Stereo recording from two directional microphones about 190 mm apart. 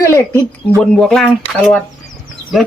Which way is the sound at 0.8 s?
5° left (ahead or behind).